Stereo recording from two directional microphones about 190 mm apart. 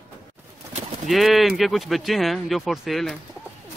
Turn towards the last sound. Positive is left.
turn(degrees=0)  # may be behind; listen again after turning